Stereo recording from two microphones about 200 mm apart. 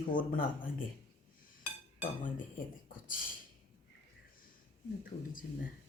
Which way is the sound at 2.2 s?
40° left (ahead or behind).